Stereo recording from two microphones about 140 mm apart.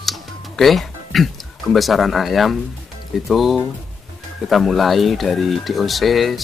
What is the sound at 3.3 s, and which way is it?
Speech, centre (ahead or behind).